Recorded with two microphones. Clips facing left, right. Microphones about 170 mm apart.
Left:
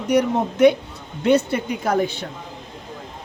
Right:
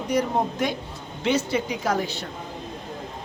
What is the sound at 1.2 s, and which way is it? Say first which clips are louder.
Speech: left 5 dB; 55° left (ahead or behind).